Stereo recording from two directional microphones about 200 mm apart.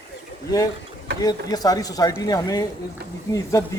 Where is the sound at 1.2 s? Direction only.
20° left (ahead or behind).